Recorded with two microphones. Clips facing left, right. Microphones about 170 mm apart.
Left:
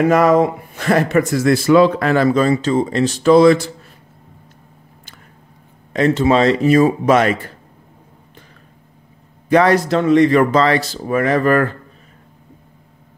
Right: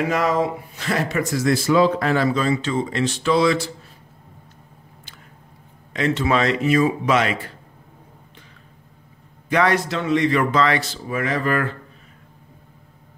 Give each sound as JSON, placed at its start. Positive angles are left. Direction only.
{"t": 0.0, "sound": "a man's voice", "side_deg": 55}
{"t": 5.9, "sound": "speech", "side_deg": 40}
{"t": 9.5, "sound": "a man's voice", "side_deg": 40}